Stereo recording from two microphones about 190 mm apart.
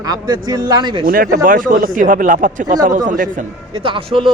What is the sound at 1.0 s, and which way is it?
Speech, 50° right (ahead or behind).